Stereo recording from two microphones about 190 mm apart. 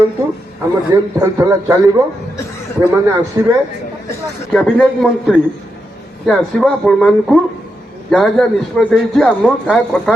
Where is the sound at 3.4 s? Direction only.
15° right (ahead or behind).